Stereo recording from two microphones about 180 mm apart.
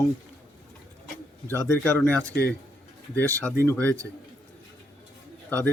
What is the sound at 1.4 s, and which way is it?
Speech, 10° left (ahead or behind).